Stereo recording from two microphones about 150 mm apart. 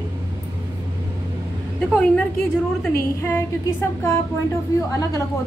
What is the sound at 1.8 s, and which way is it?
A woman's voice, 10° left (ahead or behind).